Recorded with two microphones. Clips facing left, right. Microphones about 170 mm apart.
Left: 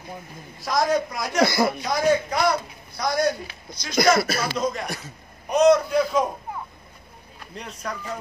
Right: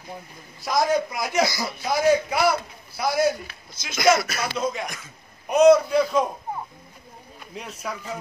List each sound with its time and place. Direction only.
0.6 s a man's voice: centre (ahead or behind)
1.4 s speech: 60° left (ahead or behind)
1.8 s a man's voice: 5° right (ahead or behind)
4.2 s speech: 30° left (ahead or behind)
4.6 s a man's voice: centre (ahead or behind)
7.5 s a man's voice: 5° right (ahead or behind)